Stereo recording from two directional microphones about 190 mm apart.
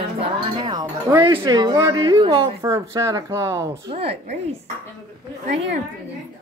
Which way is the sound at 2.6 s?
15° right (ahead or behind).